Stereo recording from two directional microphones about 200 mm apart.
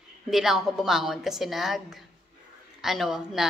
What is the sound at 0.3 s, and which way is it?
A woman's voice, centre (ahead or behind).